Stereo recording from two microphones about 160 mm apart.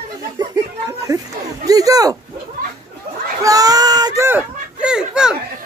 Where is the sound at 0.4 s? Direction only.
20° right (ahead or behind).